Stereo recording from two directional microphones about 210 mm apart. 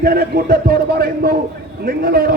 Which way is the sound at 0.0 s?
45° right (ahead or behind).